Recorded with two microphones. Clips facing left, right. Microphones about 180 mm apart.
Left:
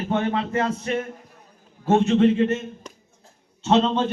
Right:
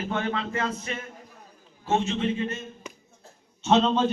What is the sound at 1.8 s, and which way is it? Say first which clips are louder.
Speech: left 8 dB; 55° left (ahead or behind).